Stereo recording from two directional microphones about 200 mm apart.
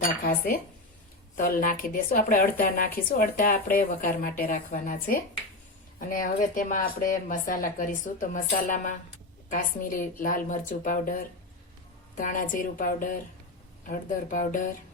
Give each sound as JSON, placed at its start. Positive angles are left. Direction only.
{"t": 0.2, "sound": "a woman's voice", "side_deg": 50}